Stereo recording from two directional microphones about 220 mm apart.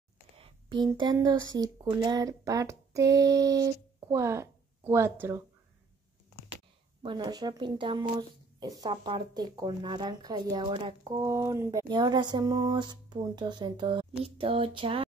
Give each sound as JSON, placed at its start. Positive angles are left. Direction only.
{"t": 0.4, "sound": "a sound", "side_deg": -20}
{"t": 1.6, "sound": "speech", "side_deg": -20}
{"t": 7.0, "sound": "speech", "side_deg": -20}